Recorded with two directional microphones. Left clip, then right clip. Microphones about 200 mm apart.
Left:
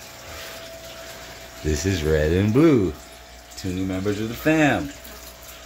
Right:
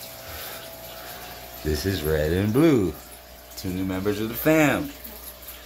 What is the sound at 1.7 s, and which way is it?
Speech, 15° left (ahead or behind).